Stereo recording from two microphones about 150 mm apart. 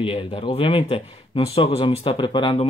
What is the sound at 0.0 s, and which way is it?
Speech, 40° left (ahead or behind).